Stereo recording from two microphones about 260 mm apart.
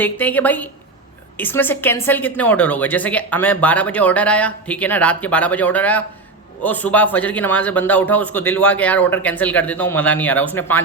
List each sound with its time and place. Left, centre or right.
0.0 s a man's voice: centre